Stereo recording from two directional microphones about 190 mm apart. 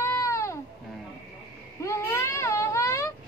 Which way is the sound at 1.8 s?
15° left (ahead or behind).